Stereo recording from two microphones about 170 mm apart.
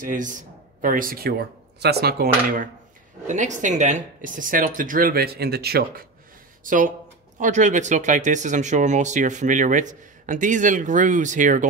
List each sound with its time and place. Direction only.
0.0 s a man's voice: 50° right (ahead or behind)
1.8 s cutlery: 70° right (ahead or behind)
3.3 s speech: 45° right (ahead or behind); by 6.0 s 65° right (ahead or behind)
6.6 s speech: 50° right (ahead or behind)